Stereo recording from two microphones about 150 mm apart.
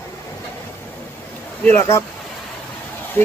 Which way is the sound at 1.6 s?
15° left (ahead or behind).